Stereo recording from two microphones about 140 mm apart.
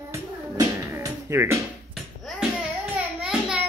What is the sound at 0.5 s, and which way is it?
Music, 20° right (ahead or behind).